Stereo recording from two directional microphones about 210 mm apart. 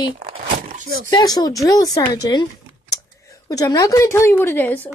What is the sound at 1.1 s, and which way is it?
Speech, 20° left (ahead or behind).